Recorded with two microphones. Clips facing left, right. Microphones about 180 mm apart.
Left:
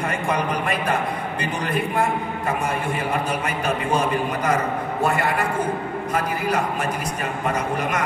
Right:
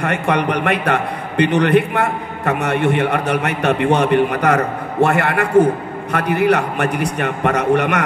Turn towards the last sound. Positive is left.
turn(degrees=-70)  # may be behind; listen again after turning